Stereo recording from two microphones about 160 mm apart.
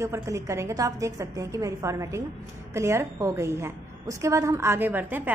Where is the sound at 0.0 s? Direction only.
20° right (ahead or behind).